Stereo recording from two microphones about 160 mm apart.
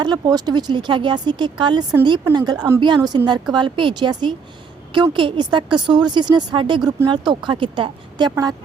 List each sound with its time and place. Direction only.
0.0 s speech: 25° right (ahead or behind)